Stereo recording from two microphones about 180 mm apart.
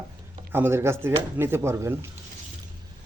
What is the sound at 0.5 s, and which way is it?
Speech, 10° right (ahead or behind).